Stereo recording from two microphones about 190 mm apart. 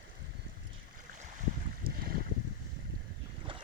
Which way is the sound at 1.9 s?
50° right (ahead or behind).